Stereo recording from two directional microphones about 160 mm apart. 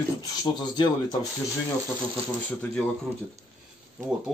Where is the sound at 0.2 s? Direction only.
25° left (ahead or behind).